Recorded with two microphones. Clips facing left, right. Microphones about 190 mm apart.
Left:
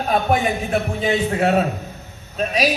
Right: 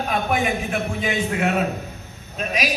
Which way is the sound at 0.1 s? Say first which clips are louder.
Left 4 dB; 35° left (ahead or behind).